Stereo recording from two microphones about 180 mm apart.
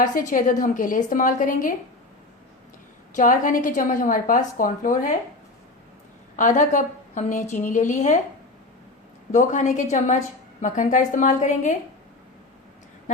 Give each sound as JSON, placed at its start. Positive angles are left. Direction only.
{"t": 0.0, "sound": "a woman's voice", "side_deg": 45}
{"t": 3.2, "sound": "a woman's voice", "side_deg": 45}
{"t": 6.3, "sound": "a woman's voice", "side_deg": 45}
{"t": 9.3, "sound": "a woman's voice", "side_deg": 45}